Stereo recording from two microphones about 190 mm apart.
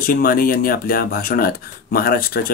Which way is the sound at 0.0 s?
50° left (ahead or behind).